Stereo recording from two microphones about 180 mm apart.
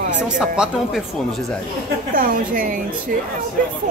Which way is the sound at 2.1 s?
55° right (ahead or behind).